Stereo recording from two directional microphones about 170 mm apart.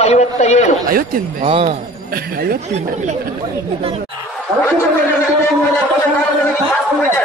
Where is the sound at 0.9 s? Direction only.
60° right (ahead or behind).